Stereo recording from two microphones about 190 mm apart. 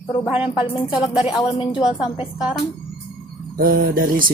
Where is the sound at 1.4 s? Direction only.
25° left (ahead or behind).